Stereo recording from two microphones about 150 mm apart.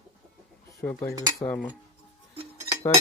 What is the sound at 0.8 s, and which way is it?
Speech, 20° left (ahead or behind).